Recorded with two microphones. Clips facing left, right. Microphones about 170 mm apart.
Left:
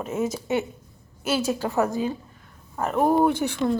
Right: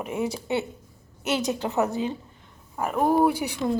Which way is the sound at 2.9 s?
Centre (ahead or behind).